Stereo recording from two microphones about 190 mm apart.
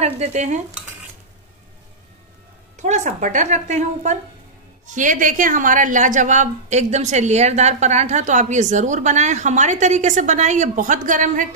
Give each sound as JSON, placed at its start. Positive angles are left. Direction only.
{"t": 0.0, "sound": "a woman's voice", "side_deg": -35}
{"t": 2.8, "sound": "a woman's voice", "side_deg": -40}